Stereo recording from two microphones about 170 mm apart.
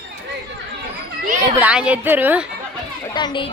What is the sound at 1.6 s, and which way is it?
Speech, 5° right (ahead or behind).